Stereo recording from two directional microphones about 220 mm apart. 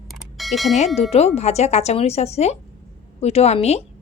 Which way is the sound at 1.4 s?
30° left (ahead or behind).